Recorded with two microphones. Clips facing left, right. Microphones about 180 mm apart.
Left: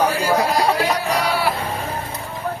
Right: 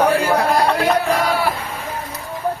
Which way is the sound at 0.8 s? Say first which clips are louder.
Right 3 dB; 55° right (ahead or behind).